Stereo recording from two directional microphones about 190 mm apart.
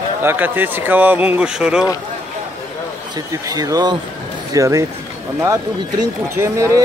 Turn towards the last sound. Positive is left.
turn(degrees=-15)  # may be behind; listen again after turning